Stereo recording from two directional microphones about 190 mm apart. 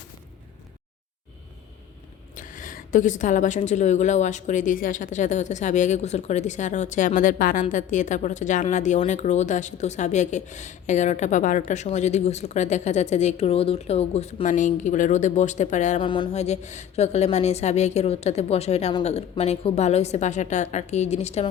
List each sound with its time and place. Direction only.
2.3 s a woman's voice: 45° left (ahead or behind)
16.0 s a woman's voice: 25° left (ahead or behind)